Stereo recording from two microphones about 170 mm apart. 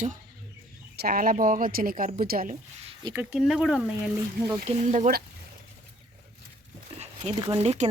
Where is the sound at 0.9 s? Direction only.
60° right (ahead or behind).